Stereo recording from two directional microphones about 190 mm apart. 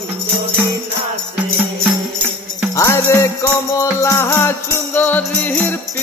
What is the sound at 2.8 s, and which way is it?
Music, 15° left (ahead or behind).